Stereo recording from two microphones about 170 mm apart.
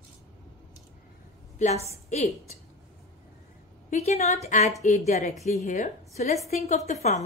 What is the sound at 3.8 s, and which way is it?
A woman's voice, 40° left (ahead or behind).